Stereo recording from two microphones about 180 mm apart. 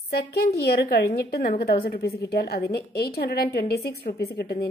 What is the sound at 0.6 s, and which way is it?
A woman's voice, 60° left (ahead or behind).